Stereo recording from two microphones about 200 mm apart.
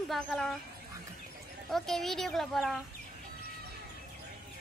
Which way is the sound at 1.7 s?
Centre (ahead or behind).